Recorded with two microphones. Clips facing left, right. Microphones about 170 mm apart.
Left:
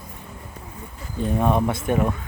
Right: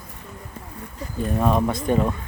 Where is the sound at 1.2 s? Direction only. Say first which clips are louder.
Even; 10° left (ahead or behind).